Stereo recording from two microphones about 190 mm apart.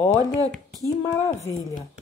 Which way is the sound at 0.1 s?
20° right (ahead or behind).